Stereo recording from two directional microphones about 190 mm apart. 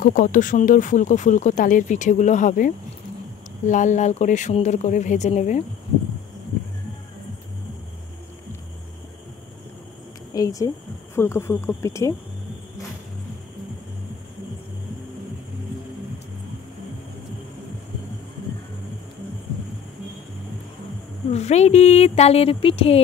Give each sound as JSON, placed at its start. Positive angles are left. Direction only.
{"t": 0.0, "sound": "speech", "side_deg": 45}
{"t": 10.3, "sound": "speech", "side_deg": 20}
{"t": 21.3, "sound": "speech", "side_deg": 35}